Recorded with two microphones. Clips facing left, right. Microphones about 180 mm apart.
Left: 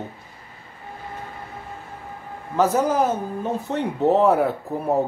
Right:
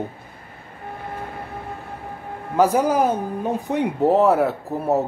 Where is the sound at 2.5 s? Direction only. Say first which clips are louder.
Right 2 dB; 10° right (ahead or behind).